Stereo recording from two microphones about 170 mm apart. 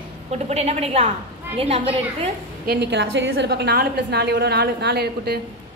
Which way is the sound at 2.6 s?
80° right.